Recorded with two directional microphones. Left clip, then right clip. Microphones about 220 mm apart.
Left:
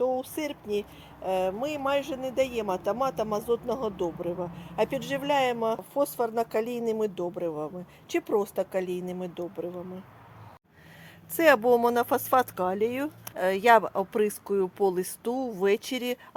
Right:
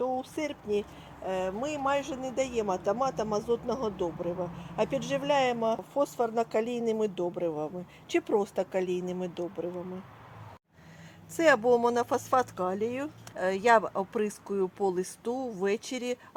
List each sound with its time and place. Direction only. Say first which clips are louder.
0.0 s speech: left 3 dB; 50° left (ahead or behind); by 9.6 s 20° left (ahead or behind)
11.3 s speech: left 2 dB; 40° left (ahead or behind)